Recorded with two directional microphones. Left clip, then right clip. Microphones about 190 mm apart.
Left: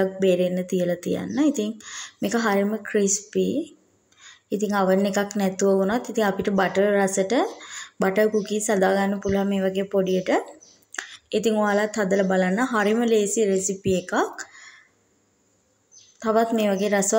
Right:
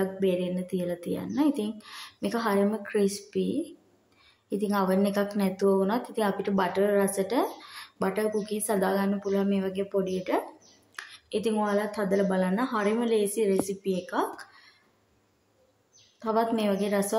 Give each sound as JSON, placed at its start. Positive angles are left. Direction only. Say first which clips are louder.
{"t": 0.0, "sound": "a woman's voice", "louder": "left 7 dB", "side_deg": 15}
{"t": 16.2, "sound": "a woman's voice", "louder": "left 5 dB", "side_deg": 15}